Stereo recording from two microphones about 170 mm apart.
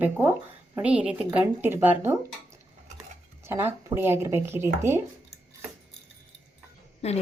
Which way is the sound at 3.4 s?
15° right (ahead or behind).